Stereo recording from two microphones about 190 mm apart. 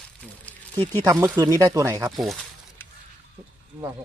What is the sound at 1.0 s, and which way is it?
Speech, 20° right (ahead or behind).